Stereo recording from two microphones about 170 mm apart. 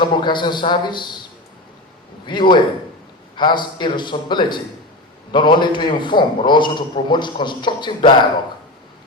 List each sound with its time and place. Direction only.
0.0 s a man's voice: 25° left (ahead or behind)
2.2 s a man's voice: 25° left (ahead or behind)